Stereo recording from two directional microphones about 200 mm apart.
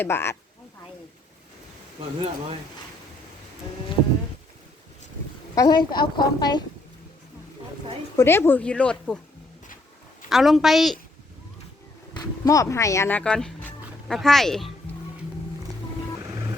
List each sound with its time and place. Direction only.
0.0 s speech: 10° left (ahead or behind)
5.5 s a woman's voice: 20° left (ahead or behind)
8.1 s speech: 10° left (ahead or behind)
10.2 s a woman's voice: centre (ahead or behind)
12.1 s speech: 15° left (ahead or behind)